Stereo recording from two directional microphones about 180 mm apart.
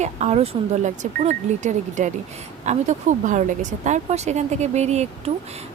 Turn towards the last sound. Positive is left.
turn(degrees=-40)  # may be behind; listen again after turning